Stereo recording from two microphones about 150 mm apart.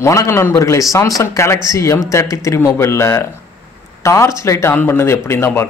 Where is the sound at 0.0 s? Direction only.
20° left (ahead or behind).